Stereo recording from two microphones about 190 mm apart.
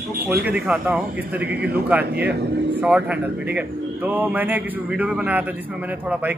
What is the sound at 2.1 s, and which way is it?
Speech, 60° right (ahead or behind).